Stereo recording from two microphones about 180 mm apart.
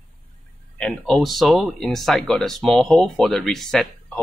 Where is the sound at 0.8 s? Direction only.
Centre (ahead or behind).